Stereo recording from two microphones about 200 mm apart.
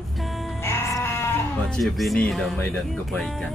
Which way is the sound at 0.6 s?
10° left (ahead or behind).